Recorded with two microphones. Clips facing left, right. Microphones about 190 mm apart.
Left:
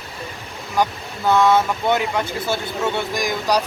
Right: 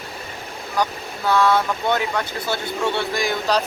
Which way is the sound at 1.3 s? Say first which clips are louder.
Left 2 dB; 20° left (ahead or behind).